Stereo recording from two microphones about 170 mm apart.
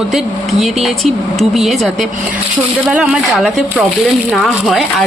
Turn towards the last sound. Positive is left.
turn(degrees=0)  # may be behind; listen again after turning